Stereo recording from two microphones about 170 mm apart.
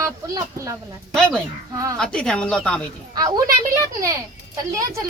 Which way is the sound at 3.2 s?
20° right (ahead or behind).